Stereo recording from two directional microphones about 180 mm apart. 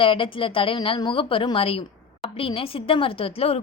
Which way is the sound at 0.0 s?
30° left (ahead or behind).